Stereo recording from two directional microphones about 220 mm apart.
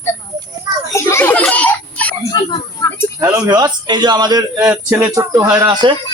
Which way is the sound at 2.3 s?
15° left (ahead or behind).